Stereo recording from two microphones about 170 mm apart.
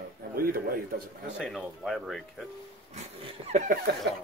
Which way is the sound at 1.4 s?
Centre (ahead or behind).